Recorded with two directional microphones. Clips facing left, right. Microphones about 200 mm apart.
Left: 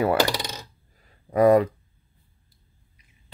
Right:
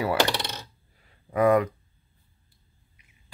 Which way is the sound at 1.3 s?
35° left (ahead or behind).